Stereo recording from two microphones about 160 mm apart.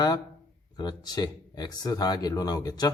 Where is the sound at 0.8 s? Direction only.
25° left (ahead or behind).